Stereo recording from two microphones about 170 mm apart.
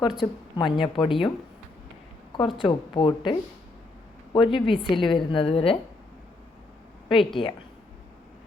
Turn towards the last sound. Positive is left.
turn(degrees=30)  # may be behind; listen again after turning